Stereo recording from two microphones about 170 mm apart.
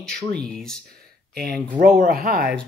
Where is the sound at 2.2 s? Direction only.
65° right (ahead or behind).